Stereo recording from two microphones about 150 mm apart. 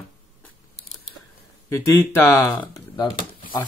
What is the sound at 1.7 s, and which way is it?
A man's voice, 15° left (ahead or behind).